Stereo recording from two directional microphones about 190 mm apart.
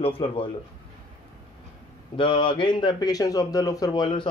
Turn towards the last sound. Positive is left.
turn(degrees=25)  # may be behind; listen again after turning